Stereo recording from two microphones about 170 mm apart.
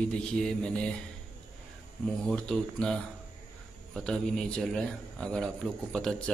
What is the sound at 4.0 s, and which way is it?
A man's voice, 5° left (ahead or behind).